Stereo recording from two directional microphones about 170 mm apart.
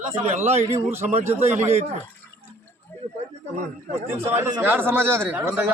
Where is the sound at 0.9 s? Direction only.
15° right (ahead or behind).